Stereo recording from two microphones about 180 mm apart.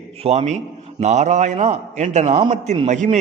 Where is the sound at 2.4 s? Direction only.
25° right (ahead or behind).